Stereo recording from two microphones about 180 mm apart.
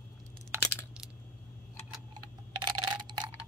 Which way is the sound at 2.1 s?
25° right (ahead or behind).